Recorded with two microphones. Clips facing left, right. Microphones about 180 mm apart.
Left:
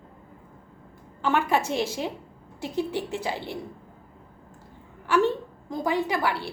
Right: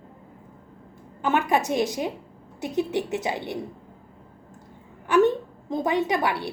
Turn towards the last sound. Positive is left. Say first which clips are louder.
# right 2 dB
turn(degrees=-20)  # may be behind; listen again after turning